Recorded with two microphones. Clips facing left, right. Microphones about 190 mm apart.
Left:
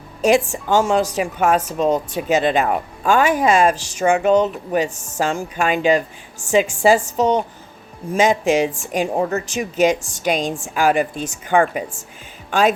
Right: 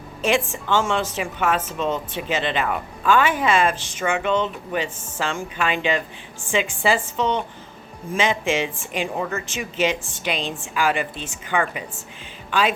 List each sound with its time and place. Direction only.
0.2 s a woman's voice: 40° left (ahead or behind)